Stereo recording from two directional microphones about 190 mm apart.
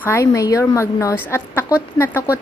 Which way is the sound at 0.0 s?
15° left (ahead or behind).